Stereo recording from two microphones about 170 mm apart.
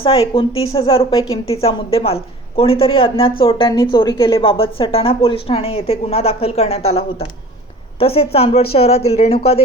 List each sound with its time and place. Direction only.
0.0 s a woman's voice: 30° left (ahead or behind)